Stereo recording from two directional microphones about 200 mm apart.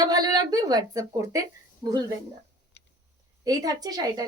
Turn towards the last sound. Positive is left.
turn(degrees=-20)  # may be behind; listen again after turning